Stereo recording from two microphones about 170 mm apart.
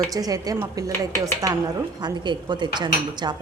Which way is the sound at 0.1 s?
20° right (ahead or behind).